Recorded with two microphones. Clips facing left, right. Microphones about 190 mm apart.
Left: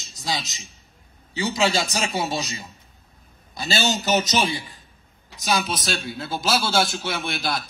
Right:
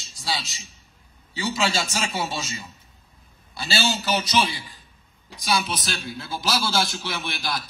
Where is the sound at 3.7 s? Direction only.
45° left (ahead or behind).